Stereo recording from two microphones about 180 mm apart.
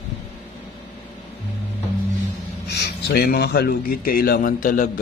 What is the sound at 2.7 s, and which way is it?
A man's voice, 65° left (ahead or behind).